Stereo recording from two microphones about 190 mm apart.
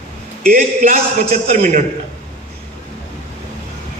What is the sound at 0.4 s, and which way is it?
A man's voice, 45° right (ahead or behind).